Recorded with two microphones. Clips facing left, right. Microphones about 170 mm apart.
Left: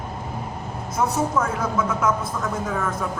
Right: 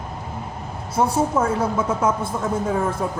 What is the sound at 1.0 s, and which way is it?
A man's voice, 30° right (ahead or behind).